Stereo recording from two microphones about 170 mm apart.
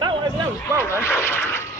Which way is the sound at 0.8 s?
15° left (ahead or behind).